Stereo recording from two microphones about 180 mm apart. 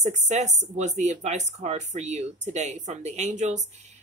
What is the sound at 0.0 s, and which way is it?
Speech, 40° right (ahead or behind).